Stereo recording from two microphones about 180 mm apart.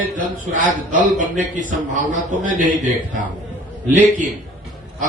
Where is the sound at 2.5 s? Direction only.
45° right (ahead or behind).